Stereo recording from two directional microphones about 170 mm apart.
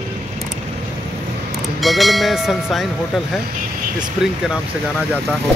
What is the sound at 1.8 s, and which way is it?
Speech, centre (ahead or behind).